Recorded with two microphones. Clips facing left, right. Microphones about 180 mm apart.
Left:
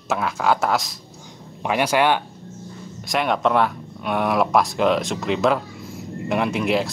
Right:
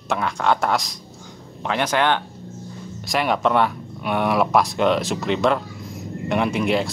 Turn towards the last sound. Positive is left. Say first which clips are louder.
# even
turn(degrees=0)  # may be behind; listen again after turning